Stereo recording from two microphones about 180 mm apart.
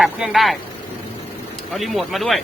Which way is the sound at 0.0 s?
Centre (ahead or behind).